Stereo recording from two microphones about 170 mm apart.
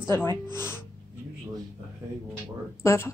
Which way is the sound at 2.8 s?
15° left (ahead or behind).